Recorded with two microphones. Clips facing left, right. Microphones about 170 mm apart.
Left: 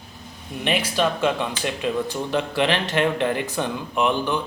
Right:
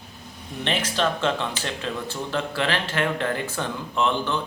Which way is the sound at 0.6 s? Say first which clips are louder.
Left 2 dB; 10° left (ahead or behind).